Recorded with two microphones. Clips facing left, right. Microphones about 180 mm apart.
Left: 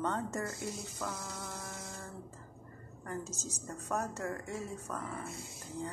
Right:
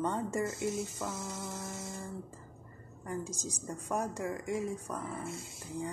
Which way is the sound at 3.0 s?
15° right (ahead or behind).